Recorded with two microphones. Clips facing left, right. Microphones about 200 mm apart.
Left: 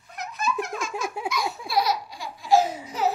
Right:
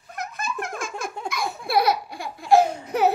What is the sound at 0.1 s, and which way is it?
Giggle, 50° right (ahead or behind).